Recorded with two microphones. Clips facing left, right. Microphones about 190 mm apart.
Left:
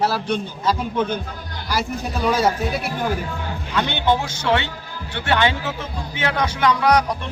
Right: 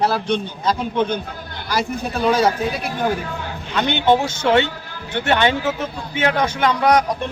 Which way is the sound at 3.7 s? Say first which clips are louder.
Right 4 dB; 20° right (ahead or behind).